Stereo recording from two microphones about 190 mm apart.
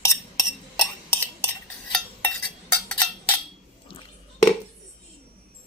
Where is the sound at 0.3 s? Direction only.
Centre (ahead or behind).